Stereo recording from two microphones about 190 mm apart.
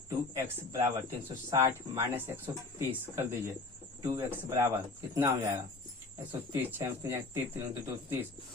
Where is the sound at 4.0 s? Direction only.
15° right (ahead or behind).